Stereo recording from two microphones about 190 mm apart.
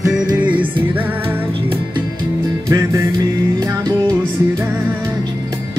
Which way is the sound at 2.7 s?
15° right (ahead or behind).